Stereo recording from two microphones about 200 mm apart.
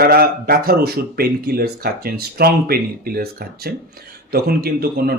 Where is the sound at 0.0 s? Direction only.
50° right (ahead or behind).